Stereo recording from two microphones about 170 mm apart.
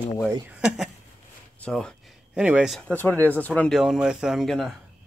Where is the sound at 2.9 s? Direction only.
10° left (ahead or behind).